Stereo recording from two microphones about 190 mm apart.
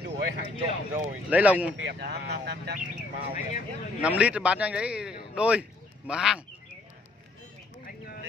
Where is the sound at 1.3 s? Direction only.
5° right (ahead or behind).